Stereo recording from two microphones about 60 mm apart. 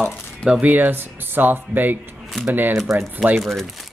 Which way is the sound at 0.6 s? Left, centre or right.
Right.